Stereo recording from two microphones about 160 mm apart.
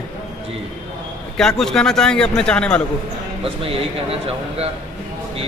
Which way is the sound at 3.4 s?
35° right (ahead or behind).